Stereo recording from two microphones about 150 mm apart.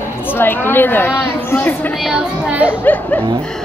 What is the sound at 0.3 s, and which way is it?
Speech, 15° left (ahead or behind).